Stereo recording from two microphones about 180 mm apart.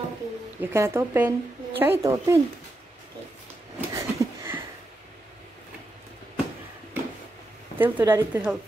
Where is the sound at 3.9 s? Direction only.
15° right (ahead or behind).